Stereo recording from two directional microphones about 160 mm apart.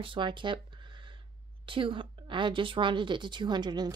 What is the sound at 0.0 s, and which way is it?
Speech, 30° right (ahead or behind).